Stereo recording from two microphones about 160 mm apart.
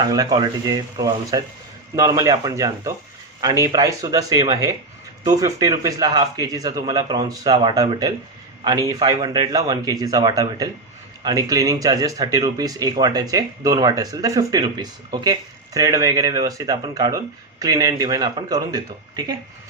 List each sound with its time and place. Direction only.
0.0 s speech: 25° right (ahead or behind)